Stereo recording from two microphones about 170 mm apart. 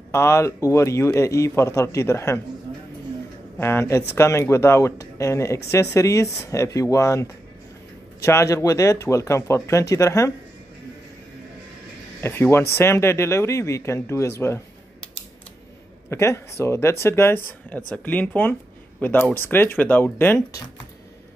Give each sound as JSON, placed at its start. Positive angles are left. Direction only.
{"t": 0.1, "sound": "speech", "side_deg": 15}
{"t": 3.5, "sound": "speech", "side_deg": 15}
{"t": 12.2, "sound": "speech", "side_deg": 15}
{"t": 14.4, "sound": "a sound", "side_deg": 10}
{"t": 16.1, "sound": "speech", "side_deg": 15}